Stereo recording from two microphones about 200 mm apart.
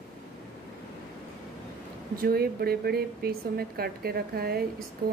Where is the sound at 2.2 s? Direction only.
50° right (ahead or behind).